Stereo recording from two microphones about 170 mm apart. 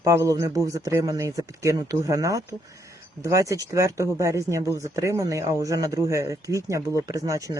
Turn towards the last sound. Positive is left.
turn(degrees=-20)  # may be behind; listen again after turning